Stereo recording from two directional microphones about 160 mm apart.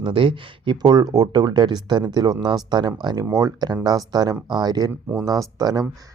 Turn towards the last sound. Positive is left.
turn(degrees=-25)  # may be behind; listen again after turning